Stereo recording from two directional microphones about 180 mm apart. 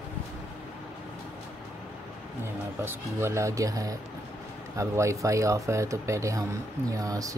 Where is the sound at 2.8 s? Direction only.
15° right (ahead or behind).